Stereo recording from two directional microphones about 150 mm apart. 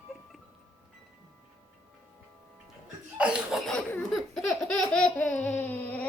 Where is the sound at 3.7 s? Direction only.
5° left (ahead or behind).